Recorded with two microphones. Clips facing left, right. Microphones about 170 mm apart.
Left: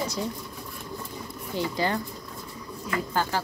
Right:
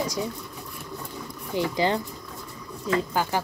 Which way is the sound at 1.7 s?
20° right (ahead or behind).